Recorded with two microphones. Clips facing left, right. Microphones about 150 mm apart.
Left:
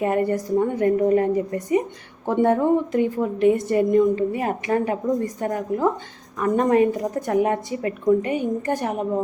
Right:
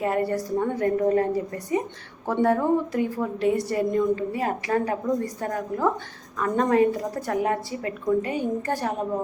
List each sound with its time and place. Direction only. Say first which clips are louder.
0.0 s a woman's voice: left 3 dB; 20° left (ahead or behind)